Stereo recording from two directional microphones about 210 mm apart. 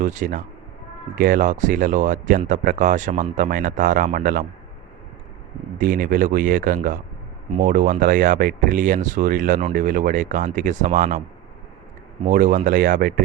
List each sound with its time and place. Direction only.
0.0 s speech: 35° right (ahead or behind)
5.7 s speech: 40° right (ahead or behind)
12.2 s speech: 40° right (ahead or behind)